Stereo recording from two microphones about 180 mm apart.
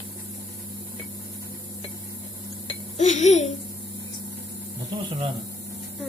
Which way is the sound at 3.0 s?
40° left (ahead or behind).